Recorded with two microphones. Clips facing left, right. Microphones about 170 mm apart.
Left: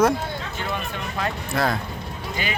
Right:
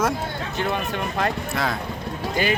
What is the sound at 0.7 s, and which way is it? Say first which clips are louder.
Speech: right 4 dB; 55° right (ahead or behind).